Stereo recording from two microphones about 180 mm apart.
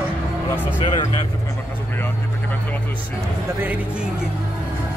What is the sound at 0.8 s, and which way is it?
Speech, 25° left (ahead or behind).